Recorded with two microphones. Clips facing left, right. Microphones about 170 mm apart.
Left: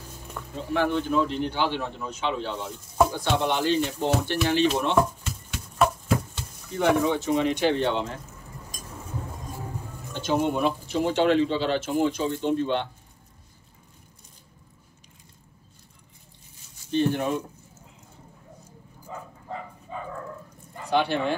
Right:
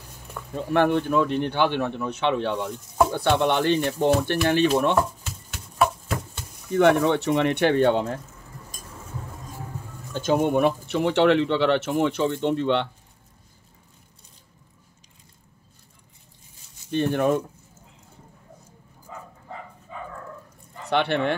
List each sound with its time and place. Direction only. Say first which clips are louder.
0.4 s a sound: right 1 dB; centre (ahead or behind)
0.7 s a man's voice: right 3 dB; 55° right (ahead or behind)
5.5 s a sound: even; centre (ahead or behind)
6.7 s a man's voice: right 4 dB; 65° right (ahead or behind)
10.1 s speech: right 4 dB; 55° right (ahead or behind)
16.9 s a man's voice: right 2 dB; 55° right (ahead or behind)
20.9 s a man's voice: right 1 dB; 65° right (ahead or behind)